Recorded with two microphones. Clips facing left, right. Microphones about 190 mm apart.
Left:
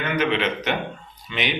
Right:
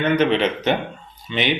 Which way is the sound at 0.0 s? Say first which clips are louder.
Right 5 dB; 35° right (ahead or behind).